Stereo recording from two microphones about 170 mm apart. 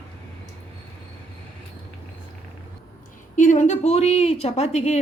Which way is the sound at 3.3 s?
50° left (ahead or behind).